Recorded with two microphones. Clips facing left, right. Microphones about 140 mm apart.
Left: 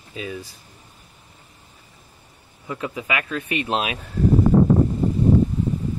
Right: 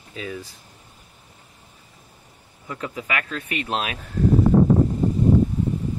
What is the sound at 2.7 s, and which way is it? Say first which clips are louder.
Speech: left 2 dB; 15° left (ahead or behind).